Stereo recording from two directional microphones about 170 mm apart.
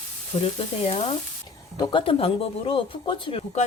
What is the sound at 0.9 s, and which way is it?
Speech, 35° left (ahead or behind).